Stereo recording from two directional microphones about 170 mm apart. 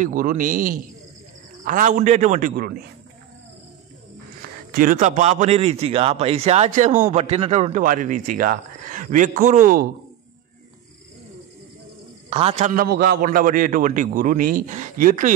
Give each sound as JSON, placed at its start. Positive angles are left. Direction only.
{"t": 0.0, "sound": "speech", "side_deg": -50}
{"t": 4.4, "sound": "a man's voice", "side_deg": -60}
{"t": 12.3, "sound": "a man's voice", "side_deg": -35}
{"t": 12.8, "sound": "speech", "side_deg": -60}